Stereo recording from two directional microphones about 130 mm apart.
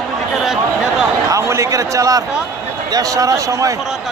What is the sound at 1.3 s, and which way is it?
A man's voice, 20° right (ahead or behind).